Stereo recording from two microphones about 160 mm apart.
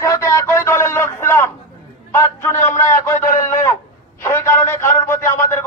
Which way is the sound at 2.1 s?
15° left (ahead or behind).